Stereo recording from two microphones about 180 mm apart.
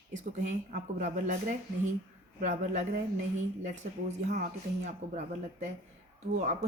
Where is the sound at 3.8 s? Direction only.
50° right (ahead or behind).